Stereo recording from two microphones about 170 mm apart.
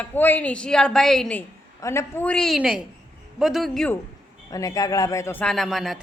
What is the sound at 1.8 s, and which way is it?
Speech, 15° left (ahead or behind).